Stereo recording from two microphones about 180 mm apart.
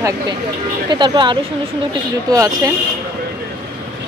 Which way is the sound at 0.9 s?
25° right (ahead or behind).